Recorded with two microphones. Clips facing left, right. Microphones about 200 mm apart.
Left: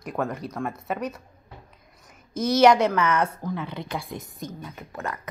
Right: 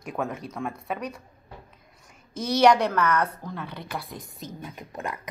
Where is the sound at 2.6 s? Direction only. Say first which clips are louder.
Left 1 dB; 5° left (ahead or behind).